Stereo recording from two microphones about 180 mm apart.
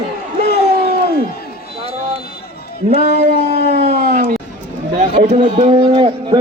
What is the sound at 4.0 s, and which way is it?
Speech, 55° right (ahead or behind).